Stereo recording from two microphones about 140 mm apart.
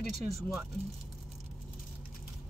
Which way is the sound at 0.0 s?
50° right (ahead or behind).